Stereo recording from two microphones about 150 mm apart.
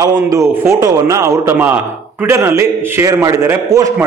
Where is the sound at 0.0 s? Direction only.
25° right (ahead or behind).